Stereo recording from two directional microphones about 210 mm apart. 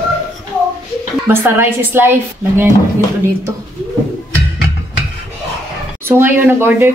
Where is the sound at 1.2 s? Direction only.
10° right (ahead or behind).